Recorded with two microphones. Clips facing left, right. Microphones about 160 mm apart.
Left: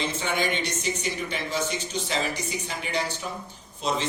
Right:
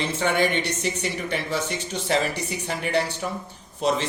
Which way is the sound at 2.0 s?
60° right (ahead or behind).